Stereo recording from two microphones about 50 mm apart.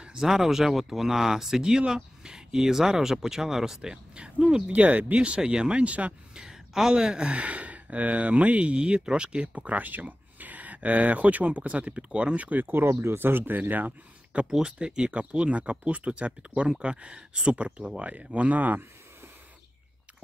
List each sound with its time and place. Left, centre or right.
0.0 s speech: centre
6.4 s a woman's voice: centre
7.3 s speech: right
12.8 s speech: right
14.5 s speech: centre; by 18.8 s right